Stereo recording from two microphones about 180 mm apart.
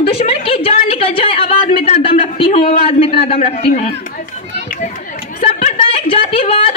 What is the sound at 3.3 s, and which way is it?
Speech, 35° left (ahead or behind).